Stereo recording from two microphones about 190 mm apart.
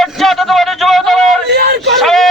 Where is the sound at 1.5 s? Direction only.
60° right (ahead or behind).